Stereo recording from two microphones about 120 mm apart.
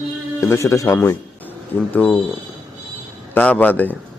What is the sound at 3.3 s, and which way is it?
Speech, 15° left (ahead or behind).